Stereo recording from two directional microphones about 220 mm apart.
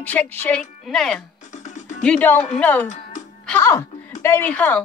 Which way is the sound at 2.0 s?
5° left (ahead or behind).